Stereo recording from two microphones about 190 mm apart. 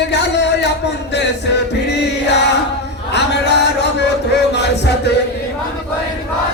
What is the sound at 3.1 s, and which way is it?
Music, 65° left (ahead or behind).